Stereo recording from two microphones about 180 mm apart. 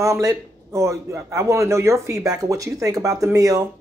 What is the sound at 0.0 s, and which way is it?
Speech, 20° right (ahead or behind).